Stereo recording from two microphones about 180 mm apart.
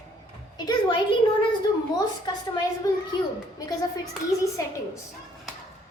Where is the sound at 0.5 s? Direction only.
25° left (ahead or behind).